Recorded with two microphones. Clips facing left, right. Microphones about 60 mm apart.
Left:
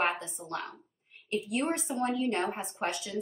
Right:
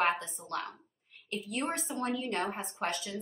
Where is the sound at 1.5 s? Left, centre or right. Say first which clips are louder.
Left 2 dB; left.